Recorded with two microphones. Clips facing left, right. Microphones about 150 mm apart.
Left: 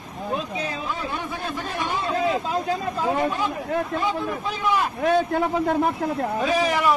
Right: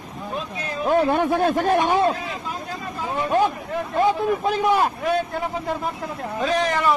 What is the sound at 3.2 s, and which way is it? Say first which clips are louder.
A man's voice: right 4 dB; 55° right (ahead or behind).